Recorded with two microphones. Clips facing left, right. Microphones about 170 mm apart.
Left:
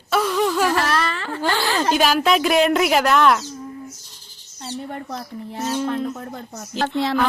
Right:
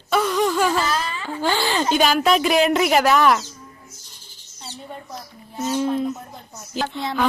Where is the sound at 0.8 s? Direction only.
75° left (ahead or behind).